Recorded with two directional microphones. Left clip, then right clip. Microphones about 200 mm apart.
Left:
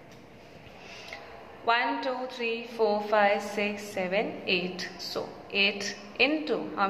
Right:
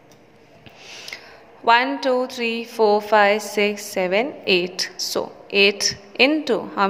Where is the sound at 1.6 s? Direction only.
45° right (ahead or behind).